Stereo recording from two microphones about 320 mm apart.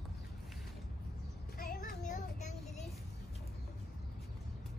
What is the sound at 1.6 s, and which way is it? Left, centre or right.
Child singing, left.